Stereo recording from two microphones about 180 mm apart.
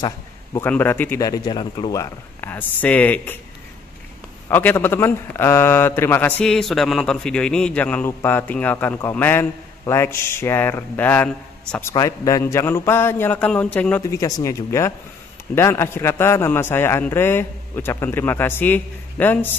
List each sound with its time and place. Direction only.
0.0 s a sound: 20° left (ahead or behind)
0.7 s a man's voice: 10° left (ahead or behind)
4.5 s a man's voice: 10° left (ahead or behind)
11.9 s a man's voice: 20° left (ahead or behind)
14.1 s a man's voice: 20° left (ahead or behind)